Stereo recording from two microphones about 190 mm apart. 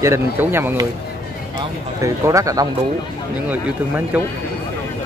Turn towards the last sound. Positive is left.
turn(degrees=-10)  # may be behind; listen again after turning